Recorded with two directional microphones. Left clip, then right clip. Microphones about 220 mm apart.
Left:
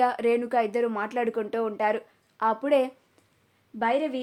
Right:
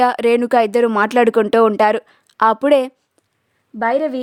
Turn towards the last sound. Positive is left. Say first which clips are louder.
# right 8 dB
turn(degrees=-45)  # may be behind; listen again after turning